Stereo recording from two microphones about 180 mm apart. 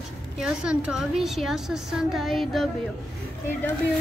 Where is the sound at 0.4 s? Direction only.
5° right (ahead or behind).